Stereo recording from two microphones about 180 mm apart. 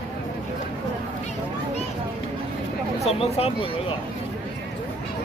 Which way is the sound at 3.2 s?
35° left (ahead or behind).